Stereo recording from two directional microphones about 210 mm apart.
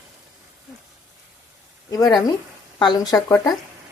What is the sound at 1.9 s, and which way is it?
Speech, 15° left (ahead or behind).